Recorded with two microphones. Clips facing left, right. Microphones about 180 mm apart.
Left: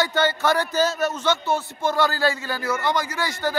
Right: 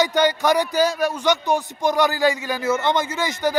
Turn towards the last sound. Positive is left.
turn(degrees=-20)  # may be behind; listen again after turning